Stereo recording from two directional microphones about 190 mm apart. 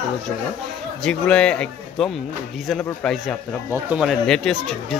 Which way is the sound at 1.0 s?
5° left (ahead or behind).